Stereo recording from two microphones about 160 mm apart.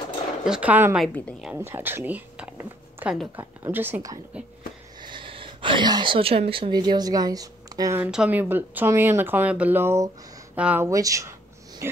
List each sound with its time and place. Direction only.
0.5 s speech: 10° right (ahead or behind)
1.0 s a woman's voice: 10° left (ahead or behind)
1.4 s speech: 10° right (ahead or behind)
5.0 s a woman's voice: 30° right (ahead or behind)
8.0 s speech: 5° right (ahead or behind)
10.9 s speech: 20° right (ahead or behind)
11.8 s a sound: 15° right (ahead or behind)